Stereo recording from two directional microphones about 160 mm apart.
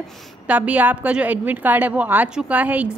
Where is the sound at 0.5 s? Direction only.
10° right (ahead or behind).